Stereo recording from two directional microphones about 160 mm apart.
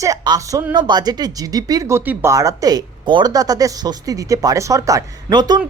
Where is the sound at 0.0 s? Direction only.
20° right (ahead or behind).